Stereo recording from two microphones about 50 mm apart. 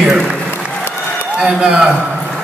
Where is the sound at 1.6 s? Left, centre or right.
Right.